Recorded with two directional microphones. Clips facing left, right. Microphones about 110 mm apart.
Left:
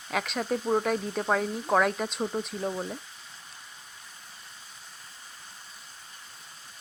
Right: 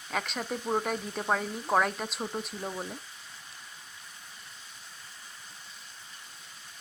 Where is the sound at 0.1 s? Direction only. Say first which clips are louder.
Left 4 dB; centre (ahead or behind).